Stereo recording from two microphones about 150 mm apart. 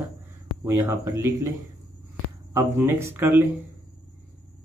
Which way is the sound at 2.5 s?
15° right (ahead or behind).